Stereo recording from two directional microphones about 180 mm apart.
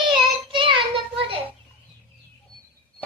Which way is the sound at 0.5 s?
25° right (ahead or behind).